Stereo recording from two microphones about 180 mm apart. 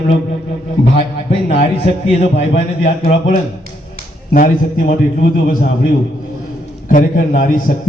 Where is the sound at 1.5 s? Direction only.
35° left (ahead or behind).